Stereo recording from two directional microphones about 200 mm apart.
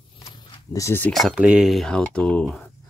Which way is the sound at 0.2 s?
15° left (ahead or behind).